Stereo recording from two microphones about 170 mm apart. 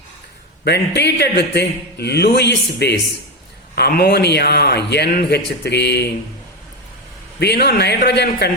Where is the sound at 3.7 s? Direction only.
70° left (ahead or behind).